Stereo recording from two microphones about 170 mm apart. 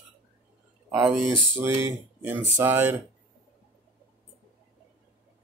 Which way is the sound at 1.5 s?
15° right (ahead or behind).